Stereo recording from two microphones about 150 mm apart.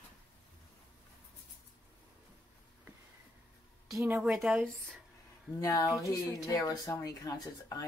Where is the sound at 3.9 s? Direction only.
15° right (ahead or behind).